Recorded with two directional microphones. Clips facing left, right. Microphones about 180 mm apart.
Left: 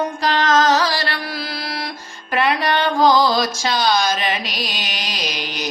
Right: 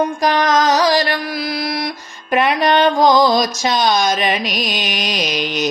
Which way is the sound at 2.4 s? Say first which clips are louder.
Right 4 dB; 20° right (ahead or behind).